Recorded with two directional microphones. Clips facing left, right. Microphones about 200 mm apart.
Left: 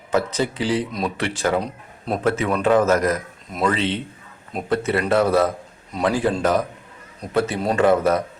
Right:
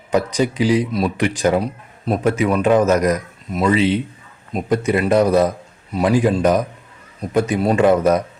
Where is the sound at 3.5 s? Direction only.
5° right (ahead or behind).